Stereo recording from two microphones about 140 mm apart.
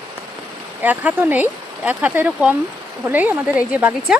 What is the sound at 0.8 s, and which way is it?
A woman's voice, 10° right (ahead or behind).